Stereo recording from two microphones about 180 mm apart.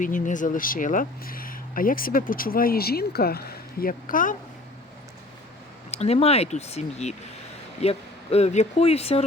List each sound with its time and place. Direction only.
0.0 s speech: 45° left (ahead or behind)
5.9 s speech: 35° left (ahead or behind)